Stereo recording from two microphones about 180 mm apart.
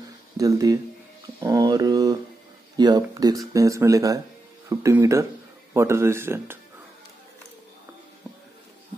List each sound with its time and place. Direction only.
0.4 s speech: 20° right (ahead or behind)